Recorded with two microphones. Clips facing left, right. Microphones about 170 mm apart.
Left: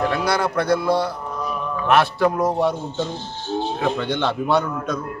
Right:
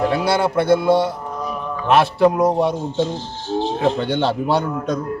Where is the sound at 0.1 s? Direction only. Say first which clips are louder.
Right 3 dB; 25° right (ahead or behind).